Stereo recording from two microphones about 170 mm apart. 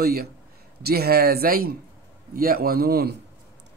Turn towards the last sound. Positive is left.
turn(degrees=-65)  # may be behind; listen again after turning